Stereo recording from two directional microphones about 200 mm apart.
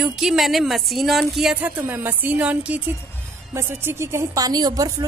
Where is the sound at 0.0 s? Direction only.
5° right (ahead or behind).